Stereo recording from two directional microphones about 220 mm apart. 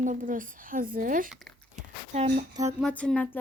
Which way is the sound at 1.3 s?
Centre (ahead or behind).